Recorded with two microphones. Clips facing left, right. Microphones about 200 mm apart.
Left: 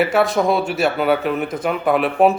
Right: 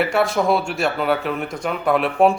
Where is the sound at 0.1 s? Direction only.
Centre (ahead or behind).